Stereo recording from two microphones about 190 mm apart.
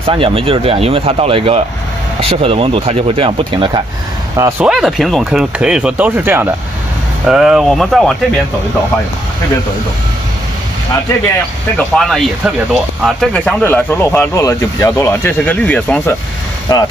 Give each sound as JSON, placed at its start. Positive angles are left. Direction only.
{"t": 0.0, "sound": "speech", "side_deg": -30}
{"t": 4.4, "sound": "speech", "side_deg": -15}
{"t": 4.6, "sound": "speech", "side_deg": 0}
{"t": 11.7, "sound": "speech", "side_deg": 5}
{"t": 16.7, "sound": "speech", "side_deg": 20}